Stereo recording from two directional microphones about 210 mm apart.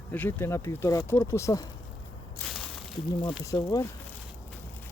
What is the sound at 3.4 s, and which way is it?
Speech, 20° left (ahead or behind).